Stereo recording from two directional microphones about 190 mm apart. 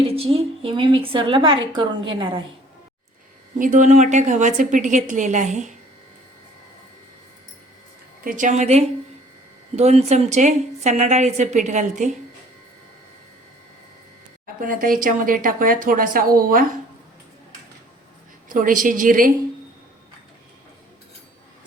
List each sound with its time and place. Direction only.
0.0 s a woman's voice: 30° right (ahead or behind)
3.6 s a woman's voice: 40° right (ahead or behind)
8.2 s a woman's voice: 45° right (ahead or behind)
14.4 s speech: 45° right (ahead or behind)
18.4 s speech: 45° right (ahead or behind)